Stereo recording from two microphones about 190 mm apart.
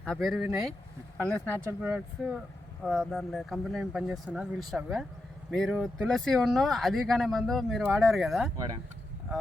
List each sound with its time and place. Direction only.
0.0 s speech: centre (ahead or behind)
8.5 s speech: 20° right (ahead or behind)